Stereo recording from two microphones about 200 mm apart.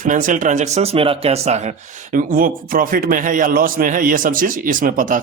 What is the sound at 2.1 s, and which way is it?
Speech, 45° right (ahead or behind).